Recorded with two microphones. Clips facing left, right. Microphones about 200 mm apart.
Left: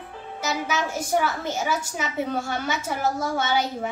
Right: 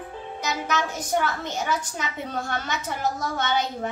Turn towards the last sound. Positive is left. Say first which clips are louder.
# left 1 dB
turn(degrees=10)  # may be behind; listen again after turning